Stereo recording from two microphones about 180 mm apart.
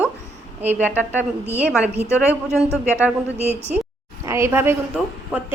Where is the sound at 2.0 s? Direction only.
15° left (ahead or behind).